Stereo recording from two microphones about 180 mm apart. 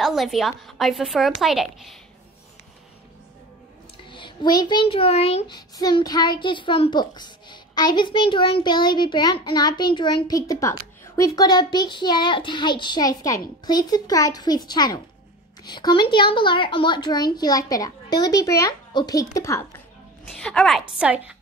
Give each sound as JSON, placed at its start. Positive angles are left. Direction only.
{"t": 0.0, "sound": "a woman's voice", "side_deg": 0}
{"t": 4.1, "sound": "a child's voice", "side_deg": 25}
{"t": 5.5, "sound": "a child's voice", "side_deg": 20}
{"t": 20.4, "sound": "a woman's voice", "side_deg": 5}